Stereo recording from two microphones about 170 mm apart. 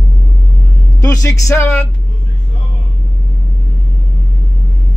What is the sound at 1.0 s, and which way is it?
Speech, 20° left (ahead or behind).